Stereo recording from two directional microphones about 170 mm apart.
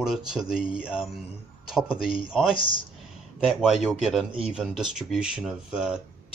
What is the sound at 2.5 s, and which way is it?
Speech, 30° left (ahead or behind).